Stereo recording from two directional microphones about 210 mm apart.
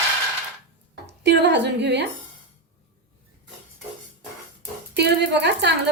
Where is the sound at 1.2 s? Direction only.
55° right (ahead or behind).